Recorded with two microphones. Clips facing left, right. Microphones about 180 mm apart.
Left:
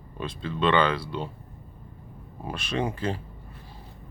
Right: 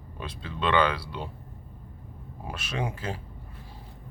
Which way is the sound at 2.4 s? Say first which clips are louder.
Left 4 dB; 5° right (ahead or behind).